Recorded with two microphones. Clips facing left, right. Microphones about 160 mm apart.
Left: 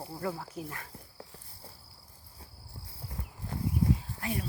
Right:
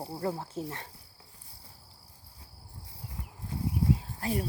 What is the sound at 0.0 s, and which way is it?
Speech, 25° right (ahead or behind).